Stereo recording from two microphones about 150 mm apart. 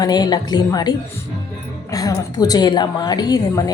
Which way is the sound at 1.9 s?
25° left (ahead or behind).